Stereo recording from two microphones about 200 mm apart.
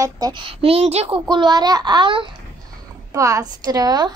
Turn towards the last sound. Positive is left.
turn(degrees=-20)  # may be behind; listen again after turning